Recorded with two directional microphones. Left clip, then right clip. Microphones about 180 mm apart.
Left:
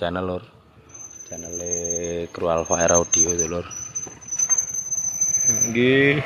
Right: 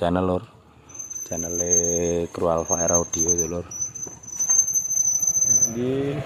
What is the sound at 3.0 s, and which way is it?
Speech, 20° right (ahead or behind).